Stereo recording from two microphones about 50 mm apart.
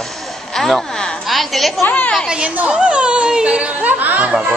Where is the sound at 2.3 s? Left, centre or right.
Centre; by 4.2 s right.